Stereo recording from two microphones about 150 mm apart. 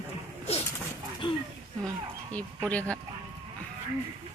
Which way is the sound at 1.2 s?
35° left (ahead or behind).